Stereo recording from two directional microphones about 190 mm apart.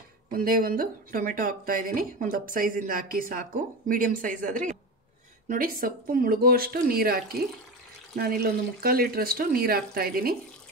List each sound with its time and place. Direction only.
0.3 s speech: 50° right (ahead or behind)